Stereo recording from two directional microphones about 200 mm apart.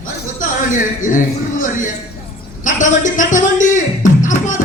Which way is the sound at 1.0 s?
40° left (ahead or behind).